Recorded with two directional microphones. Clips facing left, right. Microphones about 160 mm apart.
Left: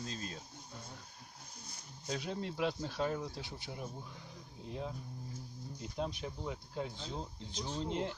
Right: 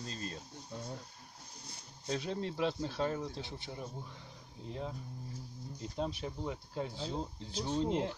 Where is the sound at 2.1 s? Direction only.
Centre (ahead or behind).